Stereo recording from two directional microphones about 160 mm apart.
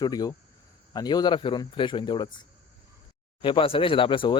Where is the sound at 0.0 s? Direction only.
25° left (ahead or behind).